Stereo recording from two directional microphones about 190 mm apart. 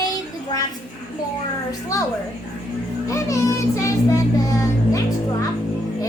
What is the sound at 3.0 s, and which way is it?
Child singing, 15° left (ahead or behind).